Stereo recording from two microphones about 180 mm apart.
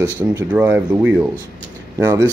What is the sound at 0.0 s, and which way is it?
Speech, 20° right (ahead or behind).